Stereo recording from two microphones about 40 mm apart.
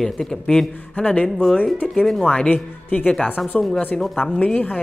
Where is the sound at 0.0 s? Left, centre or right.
Centre.